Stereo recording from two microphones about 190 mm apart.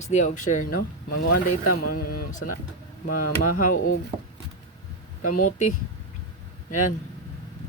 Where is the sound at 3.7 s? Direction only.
90° left.